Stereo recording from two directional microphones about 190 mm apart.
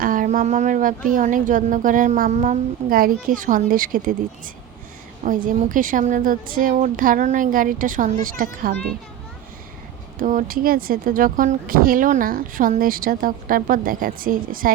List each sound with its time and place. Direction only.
0.0 s speech: 45° right (ahead or behind)
5.2 s speech: 45° right (ahead or behind)
10.2 s speech: 45° right (ahead or behind)